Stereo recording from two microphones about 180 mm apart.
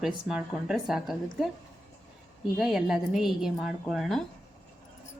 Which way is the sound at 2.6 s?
Centre (ahead or behind).